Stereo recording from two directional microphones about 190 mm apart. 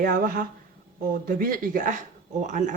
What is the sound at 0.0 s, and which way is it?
Speech, 45° right (ahead or behind).